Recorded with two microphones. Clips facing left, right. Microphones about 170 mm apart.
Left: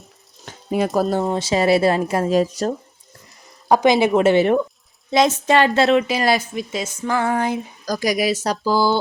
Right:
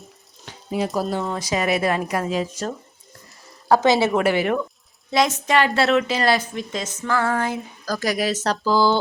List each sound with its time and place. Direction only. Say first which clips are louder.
0.4 s stir: left 4 dB; 50° left (ahead or behind)
1.2 s speech: left 5 dB; 25° left (ahead or behind)
3.7 s a woman's voice: left 2 dB; 15° left (ahead or behind)